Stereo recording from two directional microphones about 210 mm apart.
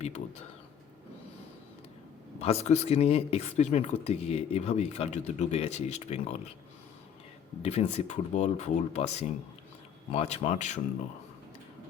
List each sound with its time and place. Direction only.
0.0 s speech: 30° left (ahead or behind)
2.4 s speech: 30° left (ahead or behind)
7.6 s speech: 30° left (ahead or behind)